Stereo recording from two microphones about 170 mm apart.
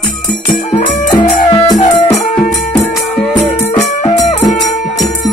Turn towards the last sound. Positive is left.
turn(degrees=5)  # may be behind; listen again after turning